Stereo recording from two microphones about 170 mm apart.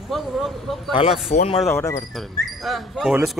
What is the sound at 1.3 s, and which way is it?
Speech, 40° left (ahead or behind).